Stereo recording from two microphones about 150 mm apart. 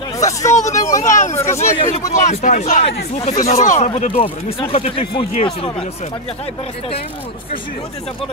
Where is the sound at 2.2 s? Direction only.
55° left (ahead or behind); by 5.9 s 40° left (ahead or behind).